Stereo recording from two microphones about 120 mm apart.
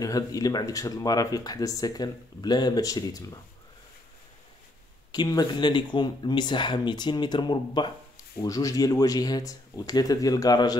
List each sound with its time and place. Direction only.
0.0 s speech: 30° left (ahead or behind)
5.1 s speech: 35° left (ahead or behind)
8.4 s speech: 30° left (ahead or behind)